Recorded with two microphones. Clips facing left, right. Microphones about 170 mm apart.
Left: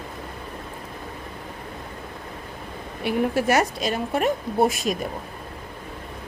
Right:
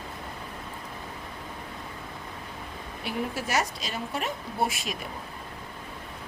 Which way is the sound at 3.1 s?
60° left (ahead or behind).